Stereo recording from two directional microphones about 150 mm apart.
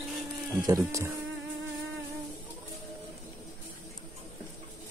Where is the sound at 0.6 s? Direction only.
20° right (ahead or behind).